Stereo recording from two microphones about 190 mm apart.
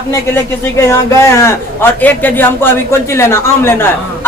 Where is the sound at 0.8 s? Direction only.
15° left (ahead or behind).